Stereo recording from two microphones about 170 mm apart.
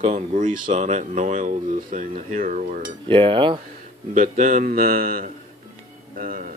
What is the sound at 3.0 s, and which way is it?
Speech, 30° right (ahead or behind).